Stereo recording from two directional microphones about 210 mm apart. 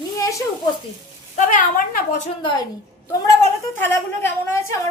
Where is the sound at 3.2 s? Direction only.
15° left (ahead or behind).